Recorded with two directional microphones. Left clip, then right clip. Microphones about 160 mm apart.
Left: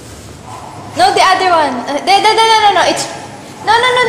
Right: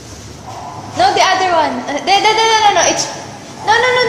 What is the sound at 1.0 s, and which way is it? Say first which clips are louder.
A woman's voice: left 2 dB; 20° left (ahead or behind).